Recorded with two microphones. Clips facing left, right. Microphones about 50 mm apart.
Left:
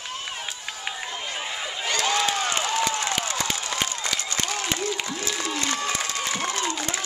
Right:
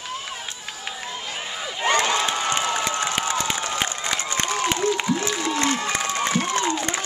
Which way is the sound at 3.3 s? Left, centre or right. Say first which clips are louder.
Right 3 dB; centre.